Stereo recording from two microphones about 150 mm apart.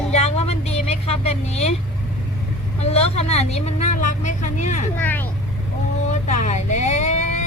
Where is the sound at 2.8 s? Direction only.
45° left (ahead or behind).